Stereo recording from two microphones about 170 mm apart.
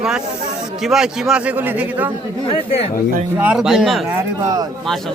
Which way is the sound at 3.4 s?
5° right (ahead or behind).